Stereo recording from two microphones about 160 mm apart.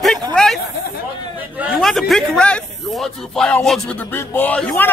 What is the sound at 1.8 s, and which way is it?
A man's voice, centre (ahead or behind).